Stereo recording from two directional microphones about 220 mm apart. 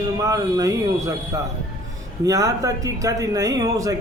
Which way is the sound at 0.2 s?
15° right (ahead or behind).